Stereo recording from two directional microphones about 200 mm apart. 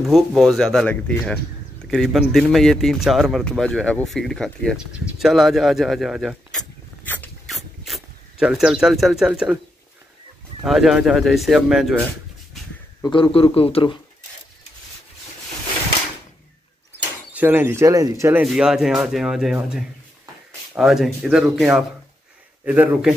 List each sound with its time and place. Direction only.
0.0 s speech: centre (ahead or behind)
6.6 s mechanisms: 10° left (ahead or behind)
10.6 s speech: centre (ahead or behind)
13.0 s a man's voice: 25° left (ahead or behind)
17.3 s speech: 10° right (ahead or behind)